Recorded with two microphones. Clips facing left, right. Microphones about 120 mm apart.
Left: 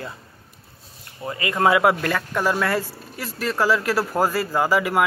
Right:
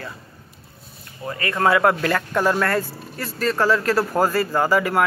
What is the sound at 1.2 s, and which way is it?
Speech, 15° left (ahead or behind).